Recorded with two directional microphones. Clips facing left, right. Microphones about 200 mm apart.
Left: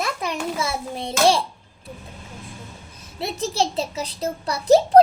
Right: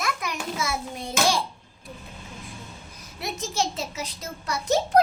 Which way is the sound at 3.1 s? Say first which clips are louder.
Left 5 dB; 30° left (ahead or behind).